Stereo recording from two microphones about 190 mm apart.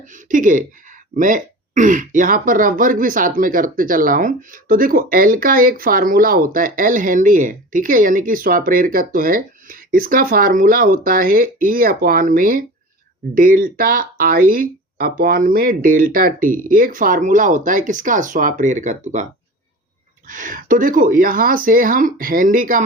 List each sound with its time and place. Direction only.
0.0 s speech: 40° right (ahead or behind)